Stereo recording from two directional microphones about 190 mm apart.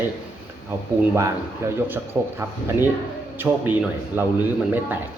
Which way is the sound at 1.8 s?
10° right (ahead or behind).